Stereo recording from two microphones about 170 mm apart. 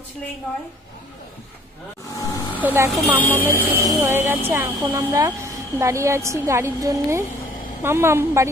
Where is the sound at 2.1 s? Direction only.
20° left (ahead or behind).